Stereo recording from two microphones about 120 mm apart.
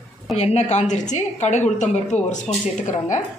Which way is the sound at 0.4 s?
65° left (ahead or behind).